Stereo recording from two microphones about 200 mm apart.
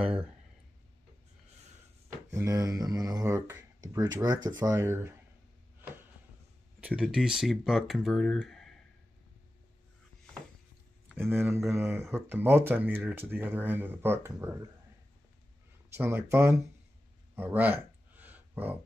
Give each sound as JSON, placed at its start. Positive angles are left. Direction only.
{"t": 2.3, "sound": "speech", "side_deg": -15}
{"t": 6.8, "sound": "speech", "side_deg": -5}
{"t": 11.7, "sound": "speech", "side_deg": -10}
{"t": 15.9, "sound": "speech", "side_deg": -10}
{"t": 17.4, "sound": "a sound", "side_deg": -10}